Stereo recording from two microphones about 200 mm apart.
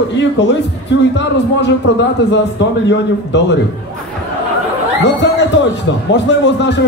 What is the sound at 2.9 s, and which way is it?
Speech, 60° left (ahead or behind).